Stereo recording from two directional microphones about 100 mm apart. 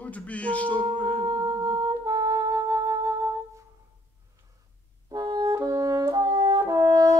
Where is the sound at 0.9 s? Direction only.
15° left (ahead or behind).